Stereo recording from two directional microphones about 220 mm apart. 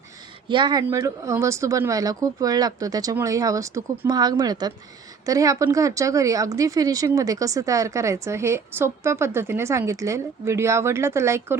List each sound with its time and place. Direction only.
0.4 s speech: 20° right (ahead or behind)